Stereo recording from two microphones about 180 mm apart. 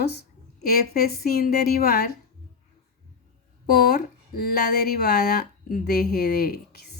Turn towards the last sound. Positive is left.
turn(degrees=60)  # may be behind; listen again after turning